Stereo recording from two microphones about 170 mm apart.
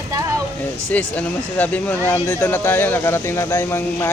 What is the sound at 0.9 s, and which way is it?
Speech, 10° left (ahead or behind).